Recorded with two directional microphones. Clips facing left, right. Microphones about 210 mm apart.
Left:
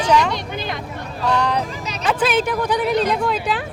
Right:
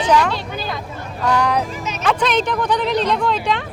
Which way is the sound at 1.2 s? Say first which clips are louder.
Right 2 dB; 10° right (ahead or behind).